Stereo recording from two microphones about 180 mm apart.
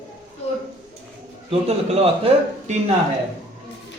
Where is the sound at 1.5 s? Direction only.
35° right (ahead or behind).